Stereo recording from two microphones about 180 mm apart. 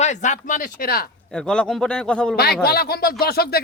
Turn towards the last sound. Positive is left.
turn(degrees=60)  # may be behind; listen again after turning